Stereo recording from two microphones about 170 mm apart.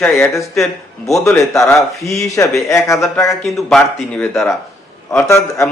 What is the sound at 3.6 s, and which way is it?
Speech, 5° left (ahead or behind).